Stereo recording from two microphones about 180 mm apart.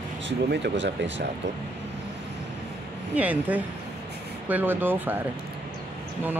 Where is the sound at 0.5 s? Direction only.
75° right (ahead or behind).